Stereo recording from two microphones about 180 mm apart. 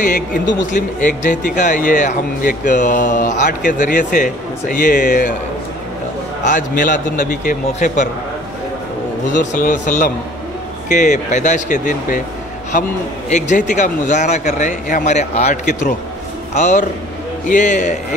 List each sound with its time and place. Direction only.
0.0 s speech: 45° left (ahead or behind)
6.4 s speech: 45° left (ahead or behind)
9.4 s a man's voice: 45° left (ahead or behind)